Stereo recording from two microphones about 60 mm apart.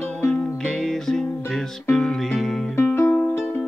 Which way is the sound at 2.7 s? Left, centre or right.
Left.